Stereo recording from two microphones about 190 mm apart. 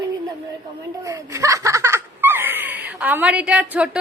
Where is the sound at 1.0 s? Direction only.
15° right (ahead or behind).